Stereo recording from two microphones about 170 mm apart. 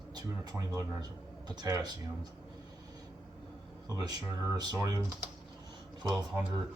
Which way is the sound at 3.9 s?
25° right (ahead or behind).